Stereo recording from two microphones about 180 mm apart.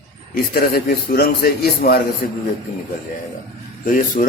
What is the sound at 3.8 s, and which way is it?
Speech, 50° left (ahead or behind).